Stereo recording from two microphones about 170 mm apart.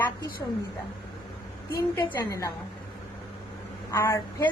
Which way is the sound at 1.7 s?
15° left (ahead or behind).